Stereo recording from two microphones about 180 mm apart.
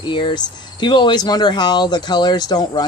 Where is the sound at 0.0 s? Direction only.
25° left (ahead or behind).